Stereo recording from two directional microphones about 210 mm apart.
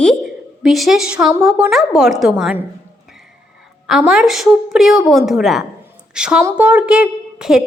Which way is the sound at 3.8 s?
5° right (ahead or behind).